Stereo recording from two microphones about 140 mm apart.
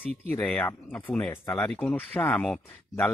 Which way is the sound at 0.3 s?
10° left (ahead or behind).